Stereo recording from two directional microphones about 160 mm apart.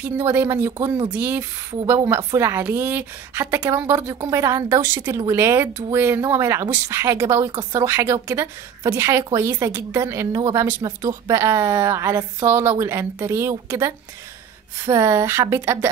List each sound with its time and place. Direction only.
0.2 s speech: 15° right (ahead or behind)